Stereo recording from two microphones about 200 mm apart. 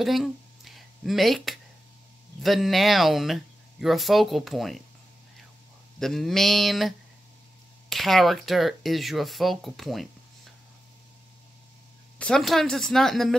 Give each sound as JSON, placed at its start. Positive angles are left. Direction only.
{"t": 0.0, "sound": "a sound", "side_deg": 0}
{"t": 2.4, "sound": "speech", "side_deg": 0}
{"t": 5.9, "sound": "speech", "side_deg": 0}
{"t": 7.9, "sound": "speech", "side_deg": 0}
{"t": 12.2, "sound": "speech", "side_deg": 5}